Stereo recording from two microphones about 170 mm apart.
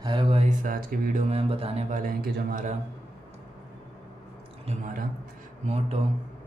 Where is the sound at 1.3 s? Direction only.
35° right (ahead or behind).